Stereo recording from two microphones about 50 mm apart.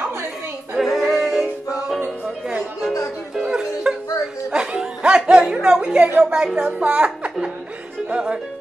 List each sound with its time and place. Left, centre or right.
0.7 s singing: centre
1.1 s music: centre
3.4 s music: centre
6.1 s speech: centre
6.6 s a woman's voice: right